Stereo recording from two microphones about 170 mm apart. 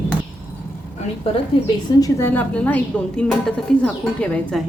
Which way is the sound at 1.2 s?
25° left (ahead or behind).